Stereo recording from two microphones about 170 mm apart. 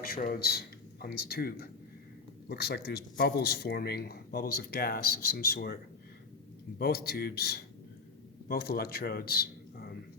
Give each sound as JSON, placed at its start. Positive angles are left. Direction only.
{"t": 0.0, "sound": "speech", "side_deg": 60}
{"t": 6.7, "sound": "a man's voice", "side_deg": 65}